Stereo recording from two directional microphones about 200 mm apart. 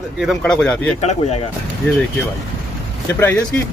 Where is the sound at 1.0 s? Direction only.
35° left (ahead or behind).